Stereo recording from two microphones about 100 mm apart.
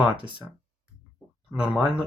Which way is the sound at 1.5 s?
10° right (ahead or behind).